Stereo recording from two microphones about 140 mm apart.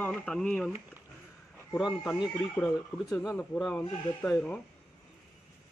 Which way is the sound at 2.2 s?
20° left (ahead or behind).